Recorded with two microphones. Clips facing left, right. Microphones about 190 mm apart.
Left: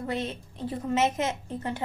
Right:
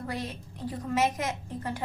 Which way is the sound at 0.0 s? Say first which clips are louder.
Left 4 dB; 25° left (ahead or behind).